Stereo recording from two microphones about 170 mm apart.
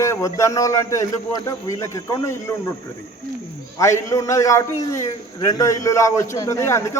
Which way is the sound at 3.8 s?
15° left (ahead or behind).